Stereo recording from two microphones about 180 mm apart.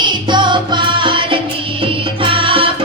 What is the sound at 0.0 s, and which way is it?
Music, 25° right (ahead or behind).